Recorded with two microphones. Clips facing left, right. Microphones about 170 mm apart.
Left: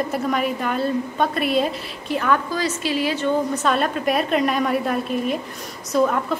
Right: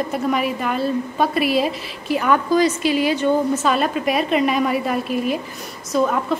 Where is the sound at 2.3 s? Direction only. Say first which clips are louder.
Right 6 dB; 15° right (ahead or behind).